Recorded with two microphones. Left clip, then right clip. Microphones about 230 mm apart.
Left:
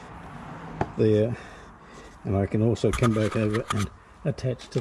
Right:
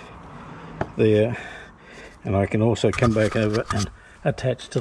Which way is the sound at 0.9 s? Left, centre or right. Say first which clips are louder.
Right 4 dB; right.